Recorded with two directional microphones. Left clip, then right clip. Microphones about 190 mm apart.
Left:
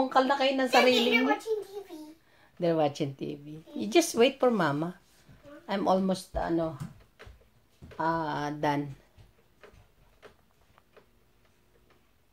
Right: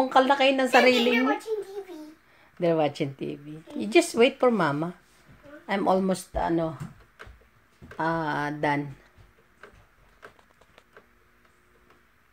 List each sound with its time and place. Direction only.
0.0 s a woman's voice: 20° right (ahead or behind)
0.9 s speech: centre (ahead or behind); by 6.7 s 20° right (ahead or behind)
8.0 s speech: 20° right (ahead or behind)